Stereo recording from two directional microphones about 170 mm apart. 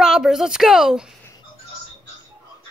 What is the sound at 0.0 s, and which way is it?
A woman's voice, 5° right (ahead or behind).